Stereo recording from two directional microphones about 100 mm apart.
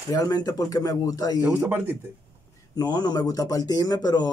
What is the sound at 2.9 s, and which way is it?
Speech, 45° left (ahead or behind).